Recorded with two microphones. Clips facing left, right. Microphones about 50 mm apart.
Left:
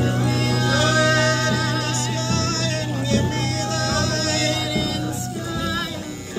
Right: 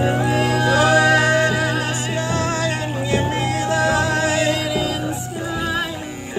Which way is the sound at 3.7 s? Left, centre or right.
Right.